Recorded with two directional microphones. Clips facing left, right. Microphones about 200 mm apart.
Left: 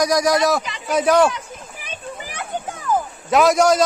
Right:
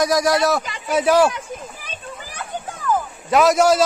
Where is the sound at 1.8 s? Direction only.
15° left (ahead or behind).